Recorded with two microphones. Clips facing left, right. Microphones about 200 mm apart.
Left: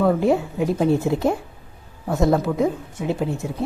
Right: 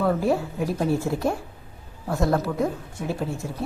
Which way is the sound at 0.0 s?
20° left (ahead or behind).